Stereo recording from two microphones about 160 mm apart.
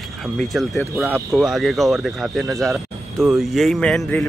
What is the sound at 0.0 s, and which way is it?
Speech, centre (ahead or behind).